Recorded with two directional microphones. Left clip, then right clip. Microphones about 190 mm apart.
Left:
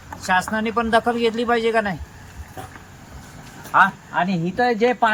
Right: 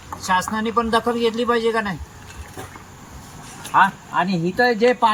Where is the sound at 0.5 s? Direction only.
20° left (ahead or behind).